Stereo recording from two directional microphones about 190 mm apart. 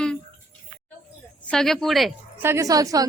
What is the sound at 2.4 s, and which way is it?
Speech, 15° right (ahead or behind).